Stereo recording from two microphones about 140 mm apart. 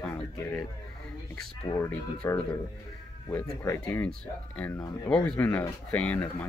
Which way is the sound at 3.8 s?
10° left (ahead or behind).